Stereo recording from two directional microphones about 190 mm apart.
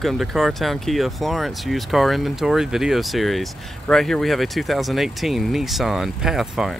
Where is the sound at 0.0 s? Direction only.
Centre (ahead or behind).